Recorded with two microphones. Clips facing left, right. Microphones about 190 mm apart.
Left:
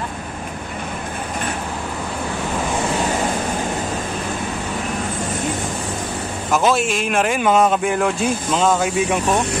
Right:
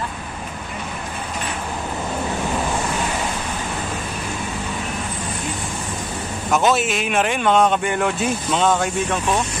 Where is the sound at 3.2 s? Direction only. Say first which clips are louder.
Left 5 dB; 50° left (ahead or behind).